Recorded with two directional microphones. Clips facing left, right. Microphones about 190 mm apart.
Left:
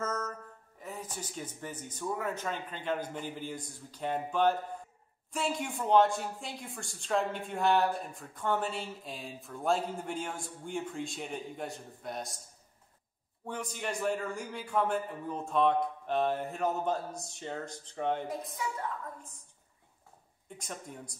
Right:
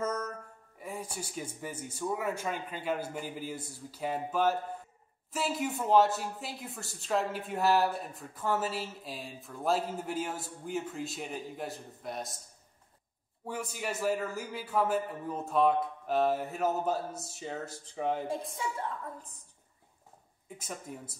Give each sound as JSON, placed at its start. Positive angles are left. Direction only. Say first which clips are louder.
{"t": 0.0, "sound": "music", "louder": "right 2 dB", "side_deg": -10}
{"t": 0.7, "sound": "speech", "louder": "right 2 dB", "side_deg": -10}
{"t": 13.5, "sound": "speech", "louder": "right 1 dB", "side_deg": -5}
{"t": 18.2, "sound": "a woman's voice", "louder": "right 2 dB", "side_deg": -30}
{"t": 20.4, "sound": "speech", "louder": "right 1 dB", "side_deg": -5}